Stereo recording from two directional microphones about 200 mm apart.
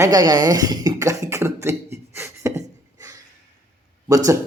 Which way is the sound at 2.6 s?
15° right (ahead or behind).